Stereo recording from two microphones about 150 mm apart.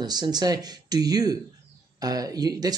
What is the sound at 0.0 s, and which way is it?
Speech, 25° right (ahead or behind).